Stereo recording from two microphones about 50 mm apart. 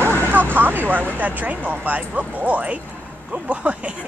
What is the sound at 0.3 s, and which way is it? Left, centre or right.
Speech, right.